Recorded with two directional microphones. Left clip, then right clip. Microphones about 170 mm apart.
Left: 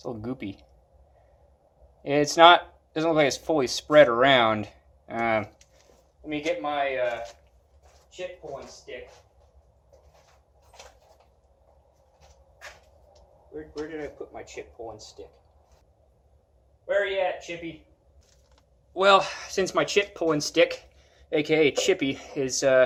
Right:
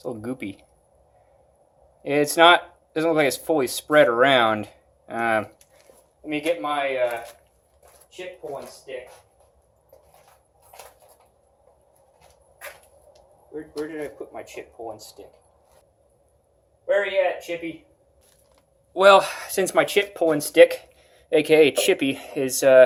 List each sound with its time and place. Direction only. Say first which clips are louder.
0.0 s speech: right 3 dB; 5° right (ahead or behind)
2.0 s speech: even; centre (ahead or behind)
6.3 s speech: right 3 dB; 20° right (ahead or behind)
13.9 s speech: right 3 dB; 25° right (ahead or behind)
18.9 s speech: right 5 dB; 20° right (ahead or behind)